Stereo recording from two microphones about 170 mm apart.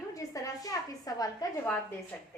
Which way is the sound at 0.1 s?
20° left (ahead or behind).